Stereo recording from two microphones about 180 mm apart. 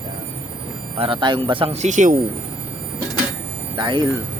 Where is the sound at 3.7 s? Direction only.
25° right (ahead or behind).